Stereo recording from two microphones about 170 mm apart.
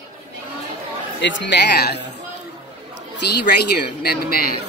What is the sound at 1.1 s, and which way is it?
Speech, 90° left.